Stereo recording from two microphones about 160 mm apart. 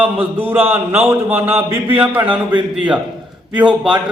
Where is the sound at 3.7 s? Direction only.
30° right (ahead or behind).